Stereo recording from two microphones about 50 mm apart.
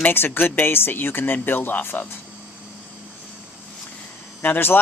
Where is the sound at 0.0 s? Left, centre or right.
Left.